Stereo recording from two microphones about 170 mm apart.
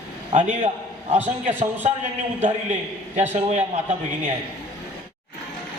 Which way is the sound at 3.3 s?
45° right (ahead or behind).